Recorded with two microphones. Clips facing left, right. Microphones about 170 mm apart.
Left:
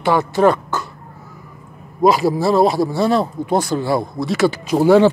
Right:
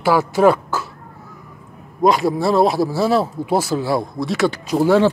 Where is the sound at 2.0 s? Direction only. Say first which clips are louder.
Left 1 dB; centre (ahead or behind).